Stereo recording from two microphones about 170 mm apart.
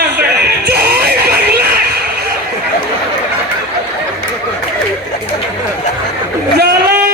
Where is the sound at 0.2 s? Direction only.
70° right (ahead or behind).